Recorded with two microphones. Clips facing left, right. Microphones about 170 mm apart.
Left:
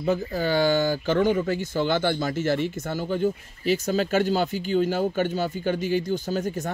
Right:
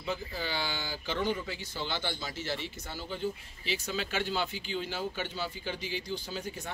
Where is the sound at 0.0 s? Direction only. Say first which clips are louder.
Left 11 dB; 45° left (ahead or behind).